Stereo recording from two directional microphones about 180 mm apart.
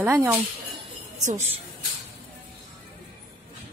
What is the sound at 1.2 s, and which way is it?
Speech, 40° right (ahead or behind).